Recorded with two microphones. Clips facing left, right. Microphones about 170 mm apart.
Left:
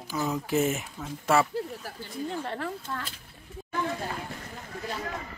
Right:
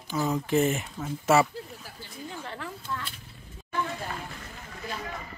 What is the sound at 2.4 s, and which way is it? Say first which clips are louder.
Speech: left 3 dB; 45° left (ahead or behind).